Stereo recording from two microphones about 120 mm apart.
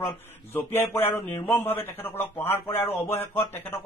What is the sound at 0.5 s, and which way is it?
A man's voice, 20° left (ahead or behind).